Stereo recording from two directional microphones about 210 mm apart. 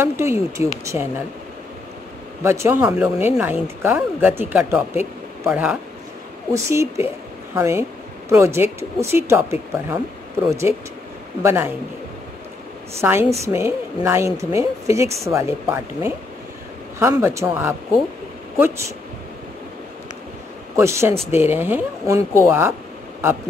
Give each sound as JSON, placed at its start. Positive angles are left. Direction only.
{"t": 0.0, "sound": "speech", "side_deg": -10}
{"t": 2.4, "sound": "speech", "side_deg": -10}
{"t": 10.7, "sound": "speech", "side_deg": 30}
{"t": 11.4, "sound": "speech", "side_deg": -10}
{"t": 13.0, "sound": "speech", "side_deg": -10}
{"t": 20.7, "sound": "speech", "side_deg": -15}